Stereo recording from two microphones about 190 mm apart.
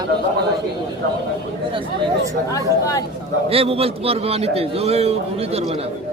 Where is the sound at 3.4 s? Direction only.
30° right (ahead or behind).